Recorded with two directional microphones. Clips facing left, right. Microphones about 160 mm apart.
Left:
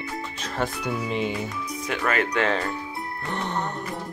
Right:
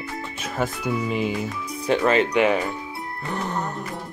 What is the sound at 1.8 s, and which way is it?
Speech, 30° right (ahead or behind).